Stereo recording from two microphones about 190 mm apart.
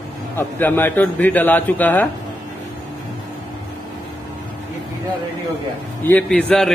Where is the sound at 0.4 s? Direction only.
10° left (ahead or behind).